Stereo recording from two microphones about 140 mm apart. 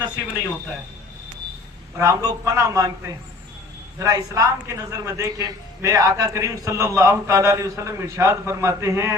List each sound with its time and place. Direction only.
2.0 s a man's voice: 25° right (ahead or behind)